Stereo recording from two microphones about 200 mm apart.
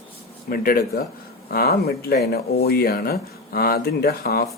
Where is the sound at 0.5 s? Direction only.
45° left (ahead or behind).